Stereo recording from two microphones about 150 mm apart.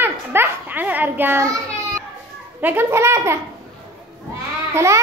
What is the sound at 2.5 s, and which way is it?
Speech, 15° right (ahead or behind).